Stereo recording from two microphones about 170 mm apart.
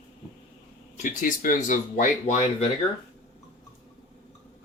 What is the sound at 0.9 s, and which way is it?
Speech, 50° left (ahead or behind).